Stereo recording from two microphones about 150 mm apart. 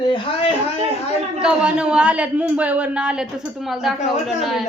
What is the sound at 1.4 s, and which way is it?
A man's voice, 5° right (ahead or behind).